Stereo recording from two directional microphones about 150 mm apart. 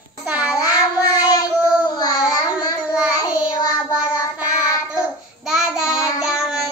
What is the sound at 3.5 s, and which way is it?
Child singing, 25° left (ahead or behind).